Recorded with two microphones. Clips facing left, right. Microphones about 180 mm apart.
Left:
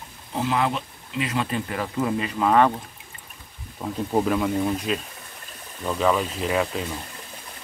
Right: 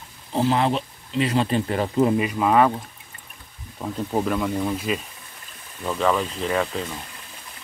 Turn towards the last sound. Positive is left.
turn(degrees=5)  # may be behind; listen again after turning